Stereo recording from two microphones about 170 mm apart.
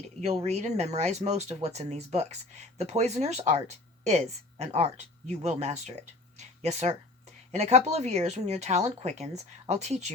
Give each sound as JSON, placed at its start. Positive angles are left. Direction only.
{"t": 0.4, "sound": "speech", "side_deg": -40}